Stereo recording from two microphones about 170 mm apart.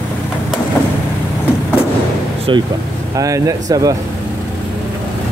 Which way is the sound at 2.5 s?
30° right (ahead or behind).